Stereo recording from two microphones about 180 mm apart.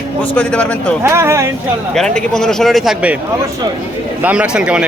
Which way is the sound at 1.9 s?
5° left (ahead or behind).